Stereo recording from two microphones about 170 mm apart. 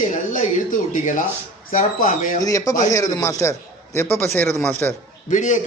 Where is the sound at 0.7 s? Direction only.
50° left (ahead or behind).